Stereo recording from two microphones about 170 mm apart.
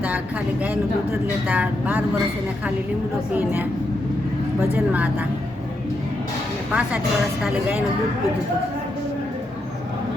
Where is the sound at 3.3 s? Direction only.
10° right (ahead or behind).